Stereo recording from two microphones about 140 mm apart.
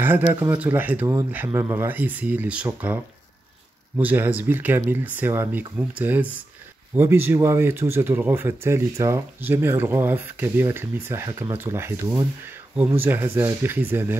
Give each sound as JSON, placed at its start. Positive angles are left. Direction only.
{"t": 0.0, "sound": "speech", "side_deg": -15}
{"t": 4.0, "sound": "speech", "side_deg": -15}